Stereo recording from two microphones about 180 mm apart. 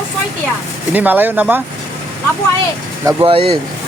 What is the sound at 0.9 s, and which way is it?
Speech, 10° right (ahead or behind).